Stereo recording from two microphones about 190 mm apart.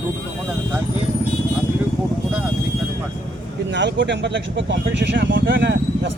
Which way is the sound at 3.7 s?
70° right (ahead or behind).